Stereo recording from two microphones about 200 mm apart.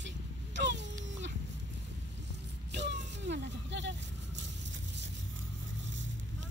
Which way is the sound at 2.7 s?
60° right (ahead or behind).